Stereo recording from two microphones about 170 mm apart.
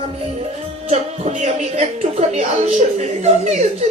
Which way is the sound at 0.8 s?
40° right (ahead or behind).